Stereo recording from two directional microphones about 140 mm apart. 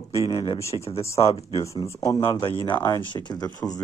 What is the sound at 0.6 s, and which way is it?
Speech, 20° left (ahead or behind).